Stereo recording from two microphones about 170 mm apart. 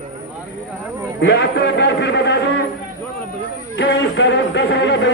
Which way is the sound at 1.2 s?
90° left.